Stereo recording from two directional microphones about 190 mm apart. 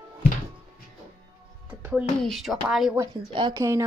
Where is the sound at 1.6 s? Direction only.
5° right (ahead or behind).